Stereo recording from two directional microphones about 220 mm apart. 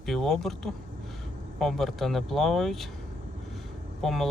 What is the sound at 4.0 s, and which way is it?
Speech, centre (ahead or behind).